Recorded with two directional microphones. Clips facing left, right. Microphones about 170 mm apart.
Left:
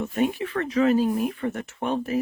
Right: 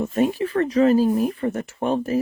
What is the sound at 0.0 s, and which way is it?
Speech, 35° right (ahead or behind).